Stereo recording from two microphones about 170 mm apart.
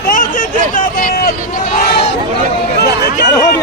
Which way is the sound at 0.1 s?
55° left (ahead or behind).